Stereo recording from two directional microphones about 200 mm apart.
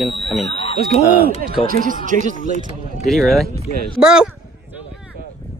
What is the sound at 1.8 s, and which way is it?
Speech, 40° right (ahead or behind).